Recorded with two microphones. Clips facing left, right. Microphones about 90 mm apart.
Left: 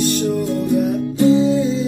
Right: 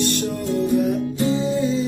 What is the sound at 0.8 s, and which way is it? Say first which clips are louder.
Music: left 4 dB; centre (ahead or behind).